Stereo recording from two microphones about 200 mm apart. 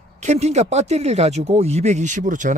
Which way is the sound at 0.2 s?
35° right (ahead or behind).